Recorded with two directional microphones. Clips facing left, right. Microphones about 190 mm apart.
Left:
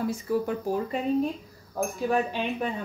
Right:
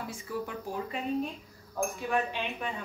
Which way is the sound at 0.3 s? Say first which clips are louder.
Left 8 dB; 40° left (ahead or behind).